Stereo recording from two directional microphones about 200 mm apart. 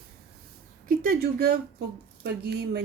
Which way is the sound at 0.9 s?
50° right (ahead or behind).